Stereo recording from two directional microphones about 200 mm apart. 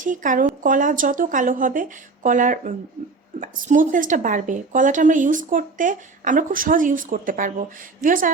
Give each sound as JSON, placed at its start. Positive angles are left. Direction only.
{"t": 0.0, "sound": "a woman's voice", "side_deg": -40}